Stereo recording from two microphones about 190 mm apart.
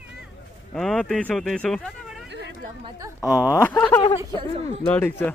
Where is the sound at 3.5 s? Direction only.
10° left (ahead or behind).